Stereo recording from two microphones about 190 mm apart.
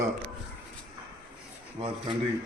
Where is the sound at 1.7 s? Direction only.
25° right (ahead or behind).